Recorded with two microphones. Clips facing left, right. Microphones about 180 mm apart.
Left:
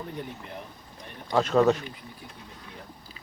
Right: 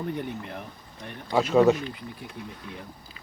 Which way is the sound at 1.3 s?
5° right (ahead or behind).